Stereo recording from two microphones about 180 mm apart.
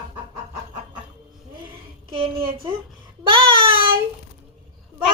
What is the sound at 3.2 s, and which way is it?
Child singing, 25° right (ahead or behind).